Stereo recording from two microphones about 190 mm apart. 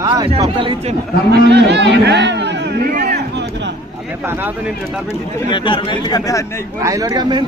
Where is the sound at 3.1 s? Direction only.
65° right (ahead or behind).